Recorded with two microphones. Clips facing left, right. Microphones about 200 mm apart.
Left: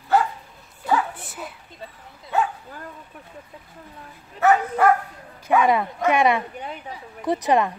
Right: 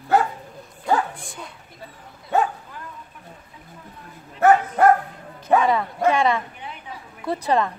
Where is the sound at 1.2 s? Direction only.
5° left (ahead or behind).